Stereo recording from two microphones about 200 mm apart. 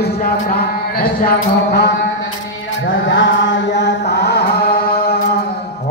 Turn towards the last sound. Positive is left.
turn(degrees=50)  # may be behind; listen again after turning